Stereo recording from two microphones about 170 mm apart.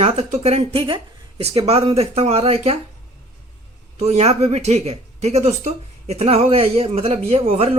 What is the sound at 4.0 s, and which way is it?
Speech, 40° right (ahead or behind).